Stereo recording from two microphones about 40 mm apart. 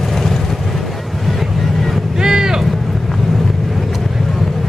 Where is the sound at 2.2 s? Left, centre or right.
Centre.